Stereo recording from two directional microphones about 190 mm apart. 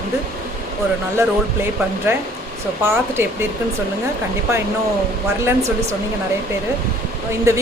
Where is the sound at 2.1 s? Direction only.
15° right (ahead or behind).